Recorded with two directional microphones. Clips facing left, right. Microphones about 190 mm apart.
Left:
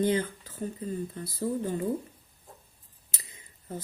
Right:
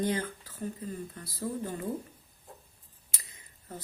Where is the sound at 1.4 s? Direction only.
25° left (ahead or behind).